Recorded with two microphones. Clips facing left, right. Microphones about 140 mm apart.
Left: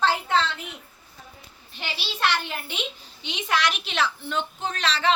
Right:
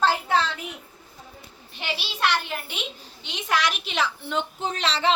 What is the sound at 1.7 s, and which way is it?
A woman's voice, 10° right (ahead or behind).